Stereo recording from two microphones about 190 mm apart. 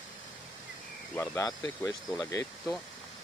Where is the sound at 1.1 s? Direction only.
15° left (ahead or behind).